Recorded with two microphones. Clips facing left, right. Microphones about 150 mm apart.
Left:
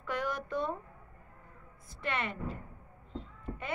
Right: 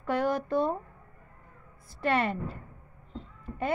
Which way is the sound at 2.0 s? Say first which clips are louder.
Right 9 dB; 35° right (ahead or behind).